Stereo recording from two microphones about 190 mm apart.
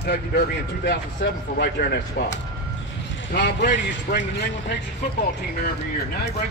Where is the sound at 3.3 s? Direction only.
65° left (ahead or behind).